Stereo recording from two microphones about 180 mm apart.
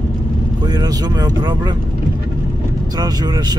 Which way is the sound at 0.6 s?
20° right (ahead or behind).